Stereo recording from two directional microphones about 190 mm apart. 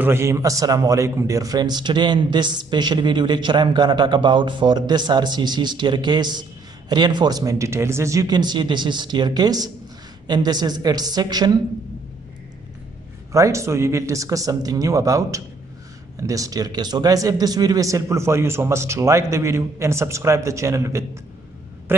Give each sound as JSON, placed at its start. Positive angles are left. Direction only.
{"t": 0.0, "sound": "a man's voice", "side_deg": -15}
{"t": 13.3, "sound": "speech", "side_deg": -15}